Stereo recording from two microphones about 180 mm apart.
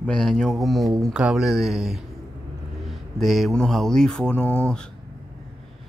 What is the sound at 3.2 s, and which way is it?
Speech, centre (ahead or behind).